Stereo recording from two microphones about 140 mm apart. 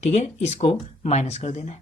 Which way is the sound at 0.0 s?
55° left (ahead or behind).